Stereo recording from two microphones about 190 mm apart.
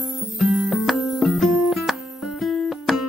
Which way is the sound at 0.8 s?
Centre (ahead or behind).